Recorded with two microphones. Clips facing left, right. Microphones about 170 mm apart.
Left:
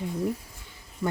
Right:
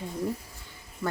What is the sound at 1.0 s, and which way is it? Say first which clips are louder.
Speech: left 2 dB; 5° left (ahead or behind).